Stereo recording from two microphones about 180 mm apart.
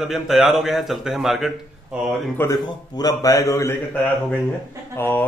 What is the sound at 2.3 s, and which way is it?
A man's voice, 15° left (ahead or behind).